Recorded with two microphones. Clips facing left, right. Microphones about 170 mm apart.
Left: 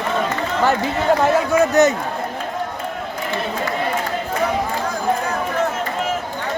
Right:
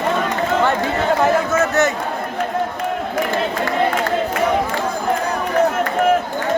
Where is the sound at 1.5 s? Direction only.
15° left (ahead or behind).